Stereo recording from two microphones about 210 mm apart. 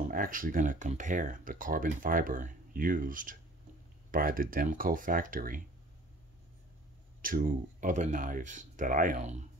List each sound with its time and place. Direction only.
0.1 s speech: 40° right (ahead or behind)
7.2 s speech: 40° right (ahead or behind)